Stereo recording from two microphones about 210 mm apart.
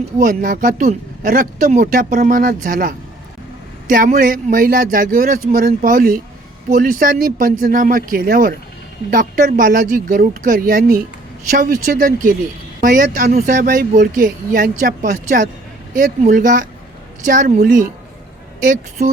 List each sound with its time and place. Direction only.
0.2 s speech: 40° right (ahead or behind)